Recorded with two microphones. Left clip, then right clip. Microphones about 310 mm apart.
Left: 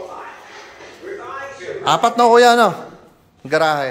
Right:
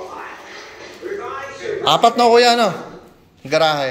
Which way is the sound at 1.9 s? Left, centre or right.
Centre.